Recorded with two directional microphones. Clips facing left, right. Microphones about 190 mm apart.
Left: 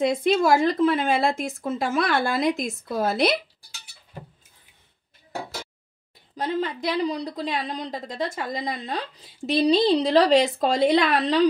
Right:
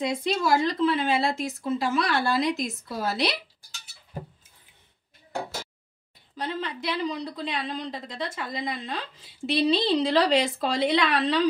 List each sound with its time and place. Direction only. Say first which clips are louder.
0.0 s a woman's voice: left 6 dB; 55° left (ahead or behind)
6.3 s a woman's voice: left 5 dB; 45° left (ahead or behind)